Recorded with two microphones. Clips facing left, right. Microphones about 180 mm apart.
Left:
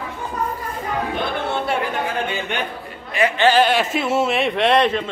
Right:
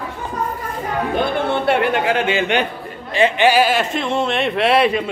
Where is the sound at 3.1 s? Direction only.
25° right (ahead or behind).